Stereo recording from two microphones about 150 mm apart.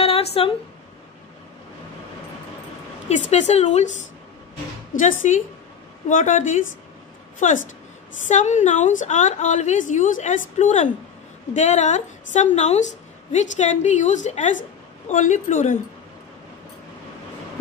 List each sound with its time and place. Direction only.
0.0 s a sound: 40° left (ahead or behind)
3.1 s a woman's voice: 50° left (ahead or behind)
4.9 s a woman's voice: 60° left (ahead or behind)